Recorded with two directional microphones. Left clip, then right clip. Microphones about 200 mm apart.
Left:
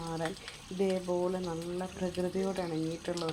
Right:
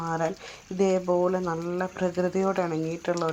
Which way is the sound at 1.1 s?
20° right (ahead or behind).